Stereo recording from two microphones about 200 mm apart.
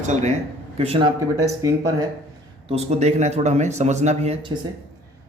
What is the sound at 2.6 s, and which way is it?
Speech, 30° right (ahead or behind).